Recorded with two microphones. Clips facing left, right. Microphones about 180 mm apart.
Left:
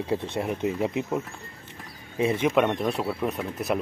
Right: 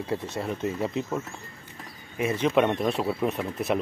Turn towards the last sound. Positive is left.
turn(degrees=0)  # may be behind; listen again after turning